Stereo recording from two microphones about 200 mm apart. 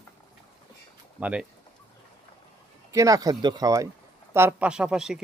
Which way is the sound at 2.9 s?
15° right (ahead or behind).